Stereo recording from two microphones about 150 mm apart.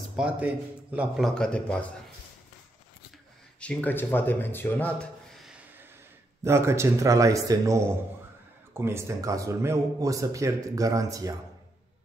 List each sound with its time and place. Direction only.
0.1 s speech: 10° right (ahead or behind)
1.2 s speech: 5° left (ahead or behind)
3.5 s speech: 10° left (ahead or behind)
6.4 s speech: 20° right (ahead or behind)